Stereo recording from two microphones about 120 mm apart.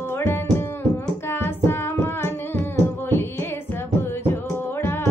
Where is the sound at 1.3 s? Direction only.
20° left (ahead or behind).